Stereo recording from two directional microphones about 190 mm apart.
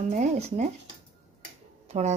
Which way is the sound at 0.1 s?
35° right (ahead or behind).